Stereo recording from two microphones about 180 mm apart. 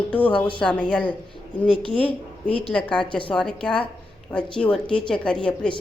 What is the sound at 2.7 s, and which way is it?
Speech, 5° left (ahead or behind).